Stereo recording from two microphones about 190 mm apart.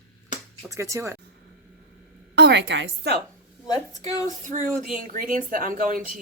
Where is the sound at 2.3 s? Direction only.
65° right (ahead or behind).